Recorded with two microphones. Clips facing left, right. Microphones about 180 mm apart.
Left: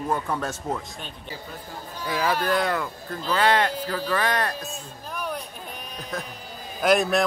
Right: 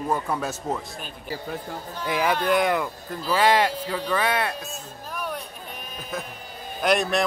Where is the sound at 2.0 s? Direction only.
15° right (ahead or behind).